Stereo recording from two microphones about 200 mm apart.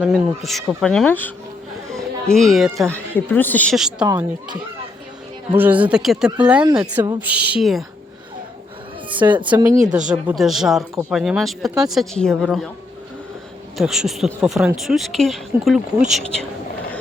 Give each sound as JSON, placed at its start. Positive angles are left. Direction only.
{"t": 0.0, "sound": "speech", "side_deg": -5}
{"t": 1.9, "sound": "music", "side_deg": 0}
{"t": 2.9, "sound": "a woman's voice", "side_deg": 10}
{"t": 5.5, "sound": "speech", "side_deg": -10}
{"t": 9.0, "sound": "a woman's voice", "side_deg": -25}
{"t": 10.1, "sound": "speech", "side_deg": 0}
{"t": 13.7, "sound": "speech", "side_deg": 0}